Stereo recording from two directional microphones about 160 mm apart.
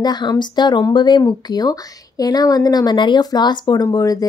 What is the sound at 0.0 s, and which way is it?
Speech, 25° left (ahead or behind).